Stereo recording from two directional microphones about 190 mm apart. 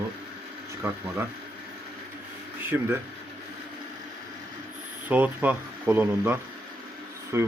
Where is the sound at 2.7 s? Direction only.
10° right (ahead or behind).